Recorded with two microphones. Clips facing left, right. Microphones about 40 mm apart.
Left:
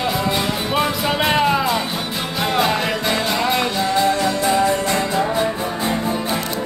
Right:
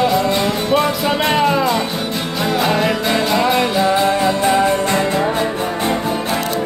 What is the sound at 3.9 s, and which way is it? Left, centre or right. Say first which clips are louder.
Music: right 2 dB; right.